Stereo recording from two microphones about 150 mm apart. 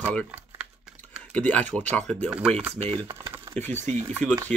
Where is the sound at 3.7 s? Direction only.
50° right (ahead or behind).